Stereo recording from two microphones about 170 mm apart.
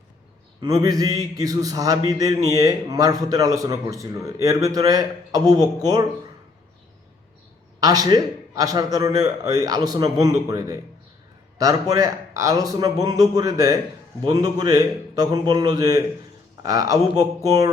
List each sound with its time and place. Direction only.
0.6 s mantra: 20° right (ahead or behind)
7.8 s mantra: 20° right (ahead or behind)